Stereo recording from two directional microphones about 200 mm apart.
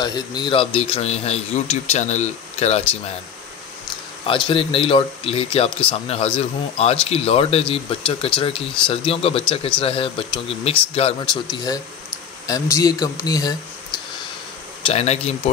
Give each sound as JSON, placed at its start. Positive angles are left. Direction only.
{"t": 0.0, "sound": "a man's voice", "side_deg": 20}
{"t": 4.3, "sound": "speech", "side_deg": 25}
{"t": 14.9, "sound": "a man's voice", "side_deg": 30}